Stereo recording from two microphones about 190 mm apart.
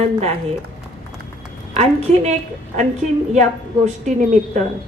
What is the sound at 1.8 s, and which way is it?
A woman's voice, 35° right (ahead or behind).